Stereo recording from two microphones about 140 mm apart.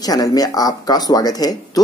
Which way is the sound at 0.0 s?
25° left (ahead or behind).